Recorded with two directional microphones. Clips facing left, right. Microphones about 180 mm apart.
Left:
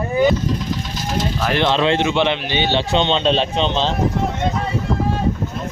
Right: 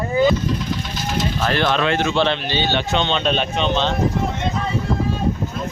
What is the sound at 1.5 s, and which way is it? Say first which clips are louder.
A man's voice: left 3 dB; 20° left (ahead or behind).